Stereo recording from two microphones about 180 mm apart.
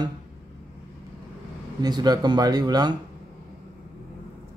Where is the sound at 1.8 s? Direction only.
20° right (ahead or behind).